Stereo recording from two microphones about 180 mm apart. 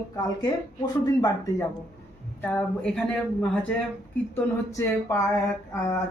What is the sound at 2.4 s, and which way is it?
Speech, 10° left (ahead or behind).